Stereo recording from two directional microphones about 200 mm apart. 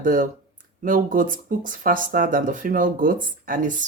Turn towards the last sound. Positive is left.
turn(degrees=-45)  # may be behind; listen again after turning